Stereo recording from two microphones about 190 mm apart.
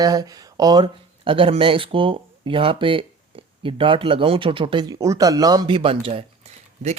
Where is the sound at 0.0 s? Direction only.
20° right (ahead or behind).